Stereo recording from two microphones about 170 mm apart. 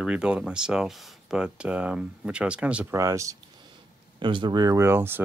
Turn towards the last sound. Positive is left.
turn(degrees=-15)  # may be behind; listen again after turning